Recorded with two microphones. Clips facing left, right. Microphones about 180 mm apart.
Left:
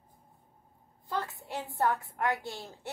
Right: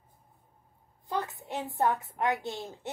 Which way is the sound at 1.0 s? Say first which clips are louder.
Right 2 dB; 20° right (ahead or behind).